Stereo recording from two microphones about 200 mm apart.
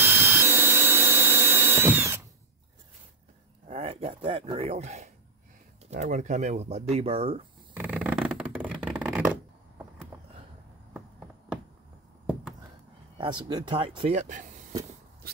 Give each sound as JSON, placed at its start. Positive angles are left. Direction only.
{"t": 0.0, "sound": "vacuum cleaner", "side_deg": -10}
{"t": 3.6, "sound": "speech", "side_deg": -30}
{"t": 7.7, "sound": "shuffling cards", "side_deg": -10}
{"t": 10.9, "sound": "a sound", "side_deg": -5}
{"t": 13.2, "sound": "speech", "side_deg": -20}
{"t": 15.2, "sound": "a sound", "side_deg": -50}